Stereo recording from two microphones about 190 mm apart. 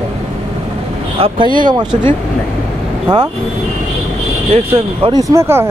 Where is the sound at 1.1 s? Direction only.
25° right (ahead or behind).